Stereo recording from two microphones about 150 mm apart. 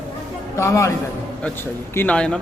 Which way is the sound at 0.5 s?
20° left (ahead or behind).